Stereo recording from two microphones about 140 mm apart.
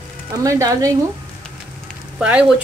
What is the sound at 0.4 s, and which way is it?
Speech, 20° right (ahead or behind).